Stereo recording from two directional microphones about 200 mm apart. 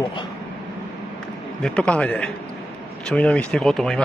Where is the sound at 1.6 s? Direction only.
5° left (ahead or behind).